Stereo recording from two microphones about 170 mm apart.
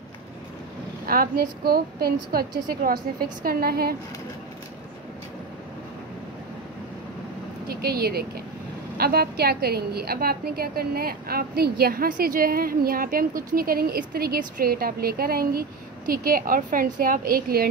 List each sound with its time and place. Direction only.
1.0 s a woman's voice: 60° right (ahead or behind)
7.6 s a woman's voice: 65° right (ahead or behind)